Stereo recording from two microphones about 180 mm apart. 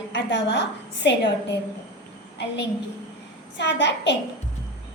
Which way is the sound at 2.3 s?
75° left (ahead or behind).